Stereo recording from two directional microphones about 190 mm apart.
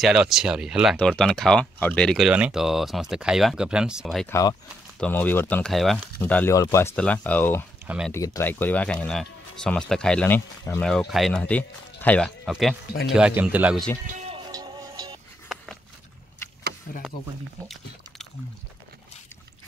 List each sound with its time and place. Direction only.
0.0 s speech: centre (ahead or behind)
4.3 s speech: 20° left (ahead or behind)
7.8 s speech: 5° right (ahead or behind)
8.1 s speech: 15° left (ahead or behind)
10.8 s a man's voice: centre (ahead or behind)
14.3 s music: 20° right (ahead or behind)
15.4 s a sound: centre (ahead or behind)